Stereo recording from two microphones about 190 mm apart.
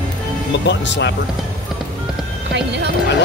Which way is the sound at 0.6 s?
70° left (ahead or behind).